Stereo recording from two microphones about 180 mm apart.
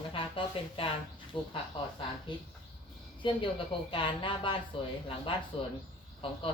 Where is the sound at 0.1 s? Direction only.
30° left (ahead or behind).